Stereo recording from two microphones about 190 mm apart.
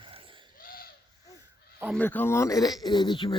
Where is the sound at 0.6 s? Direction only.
50° left (ahead or behind).